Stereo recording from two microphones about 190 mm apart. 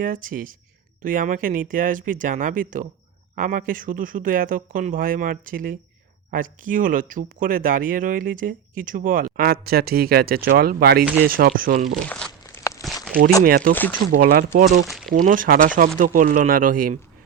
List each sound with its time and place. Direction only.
0.0 s speech: 45° right (ahead or behind)
12.0 s a sound: 10° left (ahead or behind)
13.4 s speech: 50° right (ahead or behind)
14.8 s speech: centre (ahead or behind)
15.1 s speech: 45° right (ahead or behind)